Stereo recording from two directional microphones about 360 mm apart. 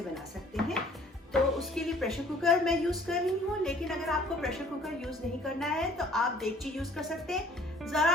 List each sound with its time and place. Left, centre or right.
0.1 s dishes: centre
1.3 s speech: centre
7.9 s speech: centre